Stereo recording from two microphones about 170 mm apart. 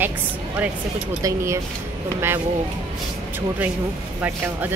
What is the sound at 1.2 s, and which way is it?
Speech, 15° right (ahead or behind).